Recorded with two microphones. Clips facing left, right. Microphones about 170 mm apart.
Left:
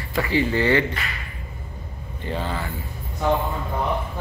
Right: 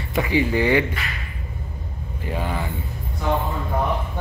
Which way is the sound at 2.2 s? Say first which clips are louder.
Right 1 dB; 10° right (ahead or behind).